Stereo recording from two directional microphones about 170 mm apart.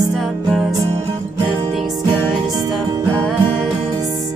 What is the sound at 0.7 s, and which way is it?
Music, 20° right (ahead or behind).